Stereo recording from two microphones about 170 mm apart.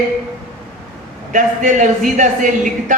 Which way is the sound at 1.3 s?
50° right (ahead or behind).